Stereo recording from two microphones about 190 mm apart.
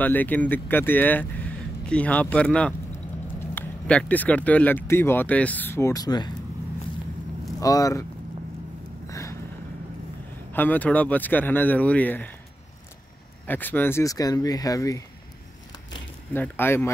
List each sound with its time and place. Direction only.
0.0 s speech: 10° left (ahead or behind)
7.6 s speech: 20° left (ahead or behind)
9.1 s a sound: 15° left (ahead or behind)
10.5 s speech: 10° left (ahead or behind)
13.5 s speech: 10° left (ahead or behind)
16.3 s speech: 10° left (ahead or behind)